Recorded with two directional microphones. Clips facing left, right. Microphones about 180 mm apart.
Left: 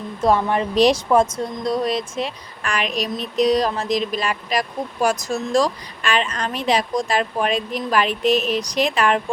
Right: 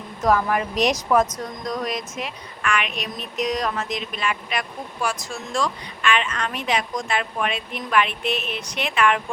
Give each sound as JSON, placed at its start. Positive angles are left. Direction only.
{"t": 0.2, "sound": "speech", "side_deg": 30}